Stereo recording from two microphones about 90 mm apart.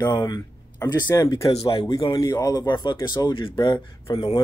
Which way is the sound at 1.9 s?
40° left (ahead or behind).